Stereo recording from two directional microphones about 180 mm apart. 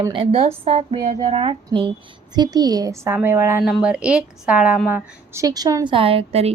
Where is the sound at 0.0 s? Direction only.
30° right (ahead or behind).